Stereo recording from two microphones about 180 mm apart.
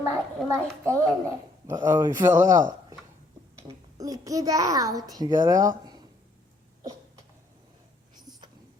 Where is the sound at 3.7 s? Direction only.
20° right (ahead or behind).